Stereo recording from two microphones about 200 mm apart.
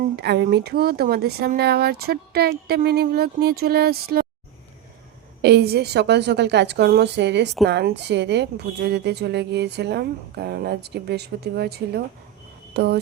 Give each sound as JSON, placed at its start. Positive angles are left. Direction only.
{"t": 0.2, "sound": "speech", "side_deg": -55}
{"t": 5.4, "sound": "a woman's voice", "side_deg": -55}